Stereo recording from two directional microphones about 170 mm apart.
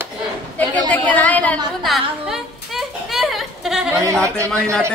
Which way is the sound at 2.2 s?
Centre (ahead or behind).